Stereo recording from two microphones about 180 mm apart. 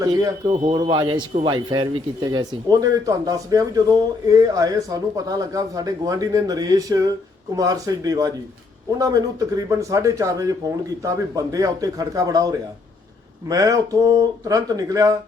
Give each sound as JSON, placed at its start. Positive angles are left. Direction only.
{"t": 0.0, "sound": "a man's voice", "side_deg": -20}